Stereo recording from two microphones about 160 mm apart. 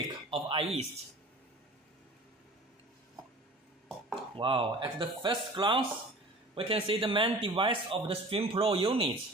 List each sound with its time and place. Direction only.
0.3 s speech: 35° right (ahead or behind)
4.4 s a man's voice: 35° right (ahead or behind)